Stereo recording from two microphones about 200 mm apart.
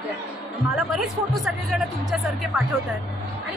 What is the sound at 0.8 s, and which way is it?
Speech, centre (ahead or behind).